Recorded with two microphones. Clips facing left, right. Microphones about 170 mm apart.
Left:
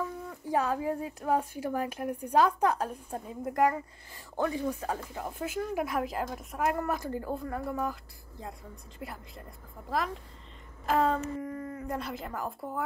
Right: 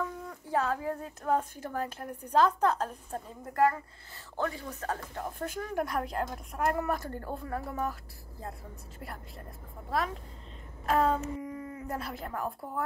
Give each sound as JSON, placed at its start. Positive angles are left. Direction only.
{"t": 0.0, "sound": "speech", "side_deg": 15}